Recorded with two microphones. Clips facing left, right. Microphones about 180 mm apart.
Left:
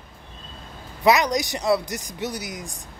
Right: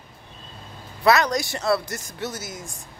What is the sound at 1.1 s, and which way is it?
Speech, 15° left (ahead or behind).